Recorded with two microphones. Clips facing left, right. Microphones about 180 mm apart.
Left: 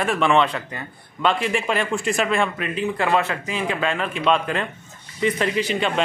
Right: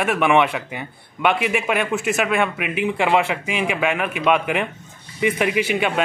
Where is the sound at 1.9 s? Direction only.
5° right (ahead or behind).